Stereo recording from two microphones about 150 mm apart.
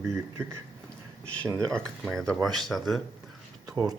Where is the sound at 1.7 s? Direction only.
5° left (ahead or behind).